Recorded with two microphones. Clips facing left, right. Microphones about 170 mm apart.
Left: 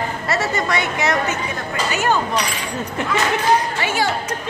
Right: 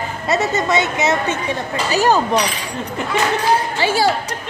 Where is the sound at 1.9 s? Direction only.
35° right (ahead or behind).